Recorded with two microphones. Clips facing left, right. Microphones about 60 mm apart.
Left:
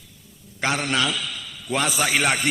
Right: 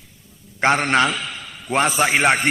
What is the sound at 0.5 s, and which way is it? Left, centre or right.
A man's voice, right.